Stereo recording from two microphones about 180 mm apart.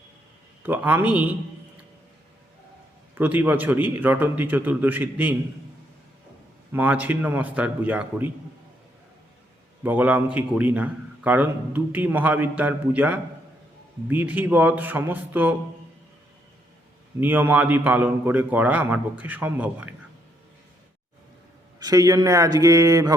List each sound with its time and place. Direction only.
0.6 s a man's voice: 10° right (ahead or behind)
3.2 s a man's voice: 10° right (ahead or behind)
6.7 s a man's voice: 10° right (ahead or behind)
9.8 s a man's voice: 10° right (ahead or behind)
17.2 s a man's voice: 10° right (ahead or behind)
21.8 s speech: 20° right (ahead or behind)